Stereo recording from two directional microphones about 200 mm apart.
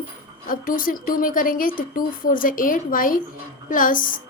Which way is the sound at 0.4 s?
45° left (ahead or behind).